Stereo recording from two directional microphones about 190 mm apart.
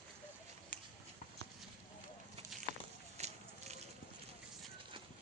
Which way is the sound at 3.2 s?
35° right (ahead or behind).